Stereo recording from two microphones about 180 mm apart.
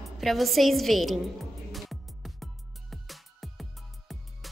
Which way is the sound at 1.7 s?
Centre (ahead or behind).